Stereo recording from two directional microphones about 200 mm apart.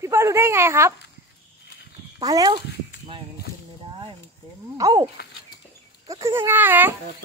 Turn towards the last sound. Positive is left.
turn(degrees=-10)  # may be behind; listen again after turning